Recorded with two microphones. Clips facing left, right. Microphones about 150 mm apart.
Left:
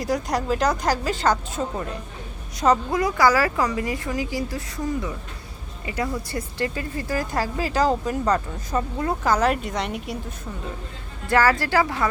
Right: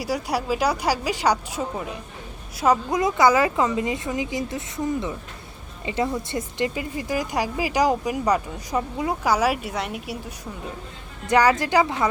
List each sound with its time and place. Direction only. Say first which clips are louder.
0.0 s speech: left 1 dB; 10° right (ahead or behind)
2.9 s speech: right 1 dB; 20° right (ahead or behind); by 10.3 s 5° right (ahead or behind)
11.3 s speech: right 1 dB; 15° right (ahead or behind)